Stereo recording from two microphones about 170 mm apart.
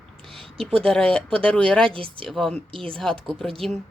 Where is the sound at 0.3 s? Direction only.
35° right (ahead or behind).